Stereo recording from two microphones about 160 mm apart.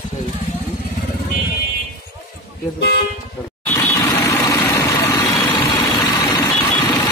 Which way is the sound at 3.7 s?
20° left (ahead or behind).